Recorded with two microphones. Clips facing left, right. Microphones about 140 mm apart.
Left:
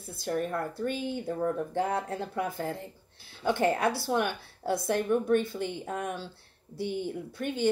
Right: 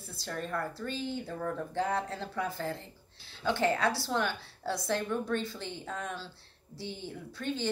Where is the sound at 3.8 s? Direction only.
55° left (ahead or behind).